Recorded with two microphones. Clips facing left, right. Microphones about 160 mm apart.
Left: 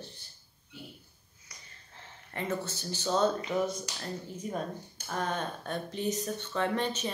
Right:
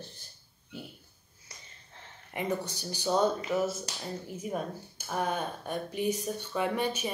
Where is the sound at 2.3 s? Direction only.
15° right (ahead or behind).